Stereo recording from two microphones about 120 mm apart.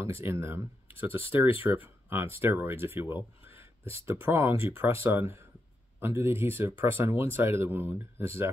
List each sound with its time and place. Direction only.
0.0 s speech: 20° right (ahead or behind)